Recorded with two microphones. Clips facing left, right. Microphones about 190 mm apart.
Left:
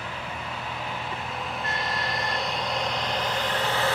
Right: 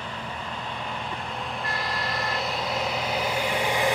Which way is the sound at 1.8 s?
Centre (ahead or behind).